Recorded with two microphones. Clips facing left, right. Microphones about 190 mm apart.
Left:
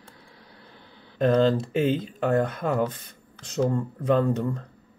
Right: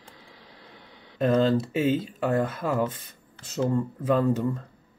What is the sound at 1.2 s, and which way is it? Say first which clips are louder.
Speech: left 1 dB; 5° right (ahead or behind).